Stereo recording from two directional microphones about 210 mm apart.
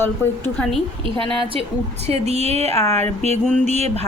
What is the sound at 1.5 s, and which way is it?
A woman's voice, 30° right (ahead or behind).